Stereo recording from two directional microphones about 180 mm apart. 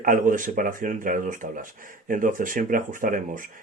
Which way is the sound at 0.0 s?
50° right (ahead or behind).